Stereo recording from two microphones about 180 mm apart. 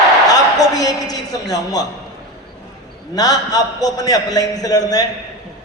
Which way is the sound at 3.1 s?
20° left (ahead or behind).